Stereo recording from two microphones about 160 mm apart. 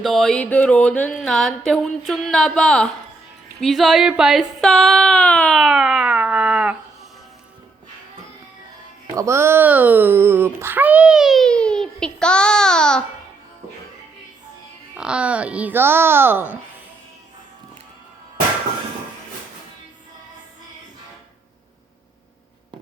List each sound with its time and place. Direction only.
0.0 s speech: centre (ahead or behind)
9.1 s speech: 15° right (ahead or behind); by 13.0 s 5° left (ahead or behind)
14.9 s speech: 5° right (ahead or behind)